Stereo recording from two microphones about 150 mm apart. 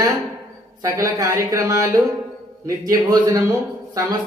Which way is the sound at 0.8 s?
20° right (ahead or behind).